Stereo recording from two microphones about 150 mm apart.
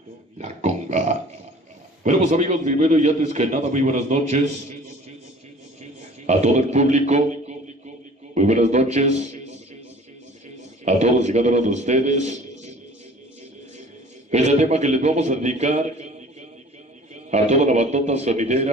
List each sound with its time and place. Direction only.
0.4 s pig: 50° right (ahead or behind)
2.0 s a man's voice: 50° right (ahead or behind)
6.2 s a man's voice: 50° right (ahead or behind)
10.9 s a man's voice: 50° right (ahead or behind)
14.3 s a man's voice: 50° right (ahead or behind)